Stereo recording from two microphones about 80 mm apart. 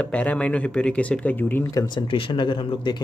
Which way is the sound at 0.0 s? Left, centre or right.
Centre.